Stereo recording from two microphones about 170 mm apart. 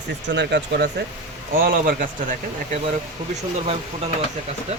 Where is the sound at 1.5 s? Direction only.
60° right (ahead or behind).